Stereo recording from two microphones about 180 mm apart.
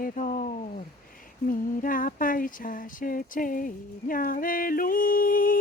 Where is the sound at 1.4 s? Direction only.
50° left (ahead or behind).